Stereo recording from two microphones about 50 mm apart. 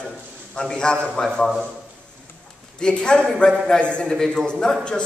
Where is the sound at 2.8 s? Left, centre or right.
Centre.